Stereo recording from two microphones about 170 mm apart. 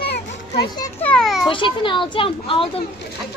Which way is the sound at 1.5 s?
30° left (ahead or behind).